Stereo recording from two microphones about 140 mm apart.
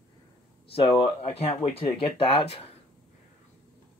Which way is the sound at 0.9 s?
45° left (ahead or behind).